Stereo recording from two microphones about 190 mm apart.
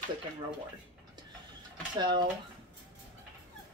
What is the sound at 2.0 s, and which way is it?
Speech, 25° right (ahead or behind).